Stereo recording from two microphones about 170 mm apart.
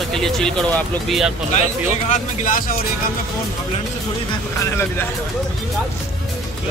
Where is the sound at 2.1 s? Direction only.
50° left (ahead or behind).